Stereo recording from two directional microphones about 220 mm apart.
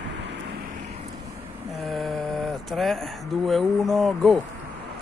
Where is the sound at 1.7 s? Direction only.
Centre (ahead or behind).